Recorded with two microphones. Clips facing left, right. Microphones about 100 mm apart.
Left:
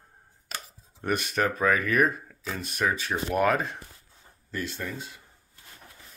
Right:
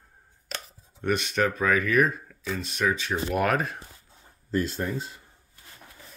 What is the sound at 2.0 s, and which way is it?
Speech, centre (ahead or behind).